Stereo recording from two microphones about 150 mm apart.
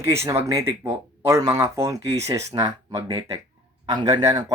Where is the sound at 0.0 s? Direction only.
20° right (ahead or behind).